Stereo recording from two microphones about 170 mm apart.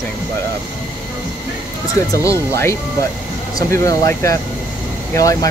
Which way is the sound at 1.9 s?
15° left (ahead or behind).